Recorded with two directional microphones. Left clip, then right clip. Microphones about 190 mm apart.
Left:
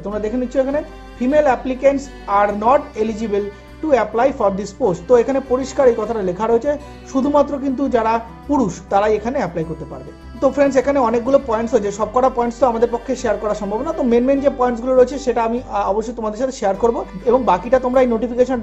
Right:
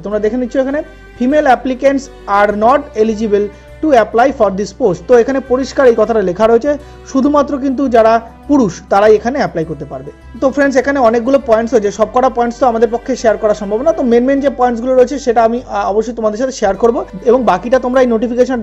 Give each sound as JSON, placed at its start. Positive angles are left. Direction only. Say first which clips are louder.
{"t": 0.0, "sound": "speech", "louder": "right 7 dB", "side_deg": -25}